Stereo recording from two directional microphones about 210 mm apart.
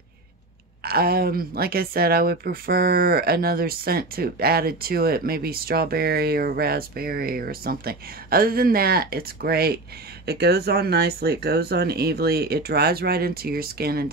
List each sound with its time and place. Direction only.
0.8 s speech: 45° right (ahead or behind)